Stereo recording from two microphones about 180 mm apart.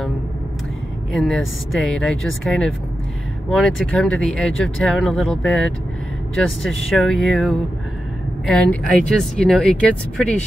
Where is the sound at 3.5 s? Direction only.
5° left (ahead or behind).